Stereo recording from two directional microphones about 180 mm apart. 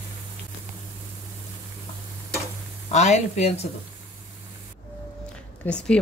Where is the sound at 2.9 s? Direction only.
40° left (ahead or behind).